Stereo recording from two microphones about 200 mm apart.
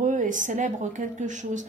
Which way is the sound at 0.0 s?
40° right (ahead or behind).